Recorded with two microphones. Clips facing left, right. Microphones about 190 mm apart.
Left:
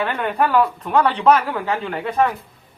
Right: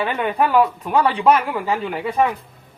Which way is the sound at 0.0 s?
10° right (ahead or behind).